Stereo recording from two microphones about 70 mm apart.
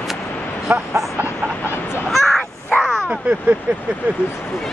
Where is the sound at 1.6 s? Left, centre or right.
Left.